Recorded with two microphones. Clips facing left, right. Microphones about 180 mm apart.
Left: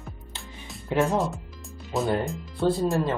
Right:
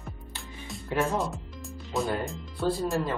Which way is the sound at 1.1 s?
Centre (ahead or behind).